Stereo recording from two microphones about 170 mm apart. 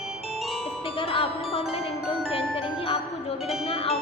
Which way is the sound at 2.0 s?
35° left (ahead or behind).